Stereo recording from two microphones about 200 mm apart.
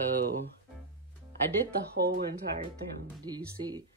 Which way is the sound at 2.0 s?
45° right (ahead or behind).